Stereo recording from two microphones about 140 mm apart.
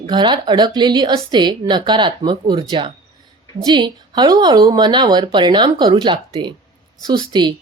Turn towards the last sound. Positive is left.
turn(degrees=-30)  # may be behind; listen again after turning